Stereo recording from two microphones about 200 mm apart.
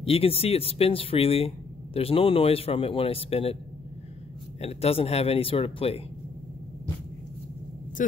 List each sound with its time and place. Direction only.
0.0 s a man's voice: 30° left (ahead or behind)
4.6 s a man's voice: 30° left (ahead or behind)